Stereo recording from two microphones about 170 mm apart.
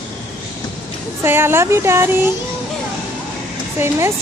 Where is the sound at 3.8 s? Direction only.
15° right (ahead or behind).